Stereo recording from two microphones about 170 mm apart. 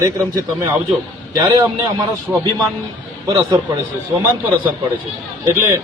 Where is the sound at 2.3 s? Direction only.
15° right (ahead or behind).